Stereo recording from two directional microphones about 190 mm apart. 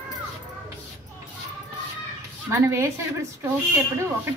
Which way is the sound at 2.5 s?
15° right (ahead or behind).